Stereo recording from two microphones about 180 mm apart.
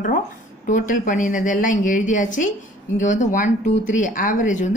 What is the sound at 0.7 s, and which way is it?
Speech, 45° left (ahead or behind).